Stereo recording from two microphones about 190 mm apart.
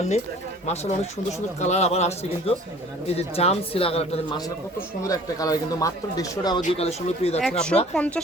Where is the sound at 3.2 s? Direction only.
30° left (ahead or behind).